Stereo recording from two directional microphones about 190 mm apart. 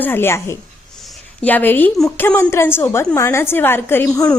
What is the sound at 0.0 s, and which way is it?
A woman's voice, 10° left (ahead or behind).